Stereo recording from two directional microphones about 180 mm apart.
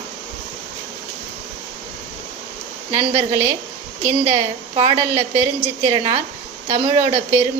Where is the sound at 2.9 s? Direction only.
30° right (ahead or behind).